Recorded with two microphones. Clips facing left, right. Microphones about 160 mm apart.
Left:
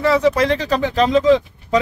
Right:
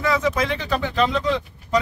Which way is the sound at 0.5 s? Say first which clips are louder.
Left 5 dB; 90° left.